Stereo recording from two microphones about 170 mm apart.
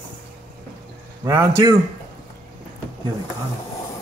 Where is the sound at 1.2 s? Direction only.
15° right (ahead or behind).